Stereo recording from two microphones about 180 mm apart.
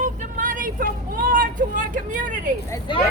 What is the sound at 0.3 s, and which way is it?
Vehicle, 45° right (ahead or behind).